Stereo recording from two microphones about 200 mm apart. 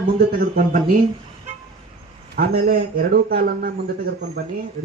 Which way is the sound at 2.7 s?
45° right (ahead or behind).